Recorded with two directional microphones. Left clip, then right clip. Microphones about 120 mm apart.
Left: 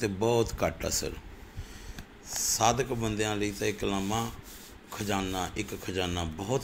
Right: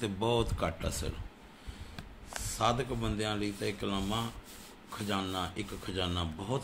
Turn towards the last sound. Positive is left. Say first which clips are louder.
# left 4 dB
turn(degrees=30)  # may be behind; listen again after turning